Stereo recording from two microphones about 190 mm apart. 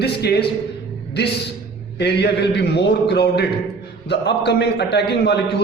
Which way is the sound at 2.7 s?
60° left (ahead or behind).